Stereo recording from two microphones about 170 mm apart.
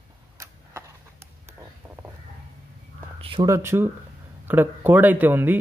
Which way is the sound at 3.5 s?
15° right (ahead or behind).